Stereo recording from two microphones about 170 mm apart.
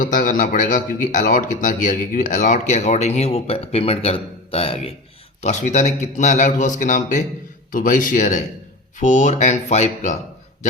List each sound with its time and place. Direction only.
0.0 s a man's voice: 50° left (ahead or behind); by 4.9 s 35° left (ahead or behind)
5.4 s a man's voice: 45° left (ahead or behind)